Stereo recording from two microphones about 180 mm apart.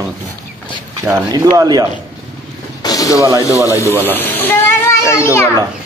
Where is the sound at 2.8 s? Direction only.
20° left (ahead or behind).